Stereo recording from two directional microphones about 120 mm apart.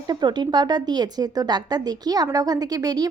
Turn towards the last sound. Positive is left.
turn(degrees=-30)  # may be behind; listen again after turning